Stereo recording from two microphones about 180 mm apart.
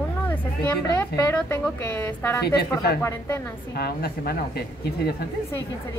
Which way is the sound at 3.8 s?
60° left (ahead or behind).